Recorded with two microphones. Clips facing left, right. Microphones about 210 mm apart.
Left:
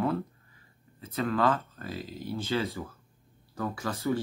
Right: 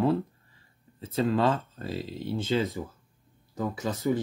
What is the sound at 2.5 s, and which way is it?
Speech, 15° right (ahead or behind).